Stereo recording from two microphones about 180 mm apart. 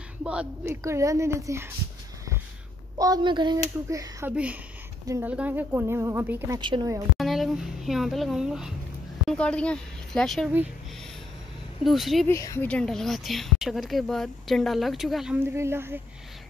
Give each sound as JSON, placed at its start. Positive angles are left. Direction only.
{"t": 0.2, "sound": "a woman's voice", "side_deg": -5}
{"t": 0.8, "sound": "a woman's voice", "side_deg": -15}
{"t": 3.0, "sound": "a woman's voice", "side_deg": -25}
{"t": 4.3, "sound": "a woman's voice", "side_deg": -5}
{"t": 6.6, "sound": "speech", "side_deg": -25}
{"t": 7.2, "sound": "a woman's voice", "side_deg": 0}
{"t": 11.8, "sound": "a woman's voice", "side_deg": 0}
{"t": 12.3, "sound": "a woman's voice", "side_deg": 15}
{"t": 15.5, "sound": "a woman's voice", "side_deg": -15}